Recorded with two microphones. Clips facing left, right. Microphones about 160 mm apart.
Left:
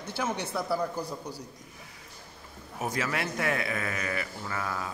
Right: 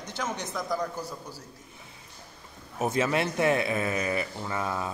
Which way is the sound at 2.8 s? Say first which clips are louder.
Right 5 dB; 25° right (ahead or behind).